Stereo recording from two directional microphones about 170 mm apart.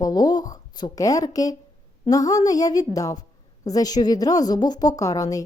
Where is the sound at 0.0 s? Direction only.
25° left (ahead or behind).